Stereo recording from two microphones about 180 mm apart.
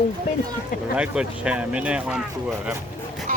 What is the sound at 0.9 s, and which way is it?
Speech, 5° right (ahead or behind).